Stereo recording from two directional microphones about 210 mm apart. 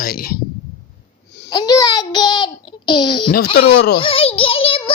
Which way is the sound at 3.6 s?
50° left (ahead or behind).